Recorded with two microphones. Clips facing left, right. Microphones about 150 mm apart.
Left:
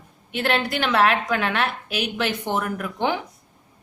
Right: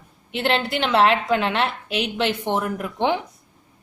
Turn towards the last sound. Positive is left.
turn(degrees=-25)  # may be behind; listen again after turning